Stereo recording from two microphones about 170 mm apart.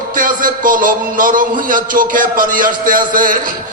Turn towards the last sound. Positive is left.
turn(degrees=-55)  # may be behind; listen again after turning